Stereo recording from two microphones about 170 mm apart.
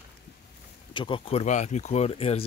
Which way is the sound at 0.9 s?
30° left (ahead or behind).